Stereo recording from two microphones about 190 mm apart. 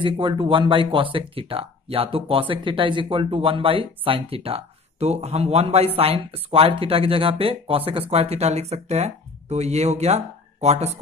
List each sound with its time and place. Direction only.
0.0 s speech: 25° right (ahead or behind)